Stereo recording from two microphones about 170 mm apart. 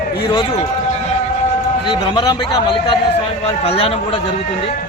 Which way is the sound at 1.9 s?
30° left (ahead or behind).